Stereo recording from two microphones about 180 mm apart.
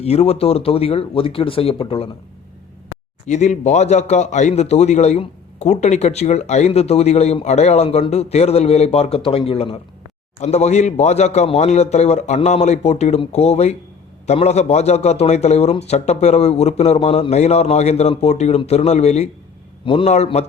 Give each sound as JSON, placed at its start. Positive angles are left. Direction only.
{"t": 0.0, "sound": "speech", "side_deg": 35}
{"t": 3.2, "sound": "speech", "side_deg": 40}